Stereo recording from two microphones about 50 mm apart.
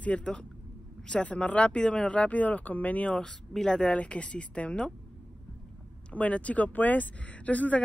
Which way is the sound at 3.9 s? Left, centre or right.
Left.